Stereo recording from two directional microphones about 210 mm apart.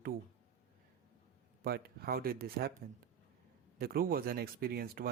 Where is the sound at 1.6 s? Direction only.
45° right (ahead or behind).